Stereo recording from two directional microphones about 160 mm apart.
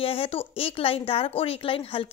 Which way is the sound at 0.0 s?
35° left (ahead or behind).